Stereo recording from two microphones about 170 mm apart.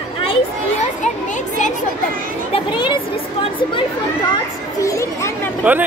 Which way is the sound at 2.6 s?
25° left (ahead or behind).